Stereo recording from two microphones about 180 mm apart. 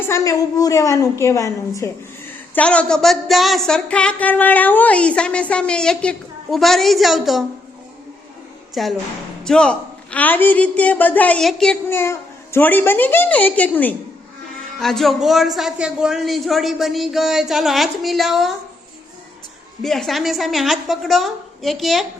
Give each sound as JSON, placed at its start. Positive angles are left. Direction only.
{"t": 0.0, "sound": "a man's voice", "side_deg": 15}
{"t": 2.6, "sound": "speech", "side_deg": 5}
{"t": 8.7, "sound": "a woman's voice", "side_deg": 0}
{"t": 11.9, "sound": "a man's voice", "side_deg": 15}
{"t": 19.8, "sound": "speech", "side_deg": 0}